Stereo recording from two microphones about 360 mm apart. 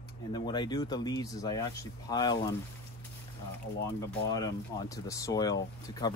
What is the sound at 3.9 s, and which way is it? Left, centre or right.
Speech, centre.